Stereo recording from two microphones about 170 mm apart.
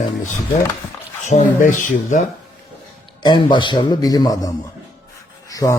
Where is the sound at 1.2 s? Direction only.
50° left (ahead or behind).